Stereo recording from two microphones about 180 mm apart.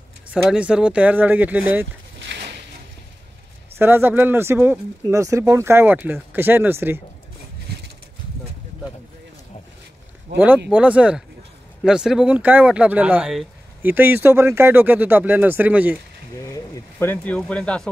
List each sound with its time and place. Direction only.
0.3 s speech: 5° right (ahead or behind)
2.1 s a sound: 80° right
3.7 s speech: 10° right (ahead or behind)
10.3 s speech: 10° right (ahead or behind)
16.4 s speech: 15° left (ahead or behind)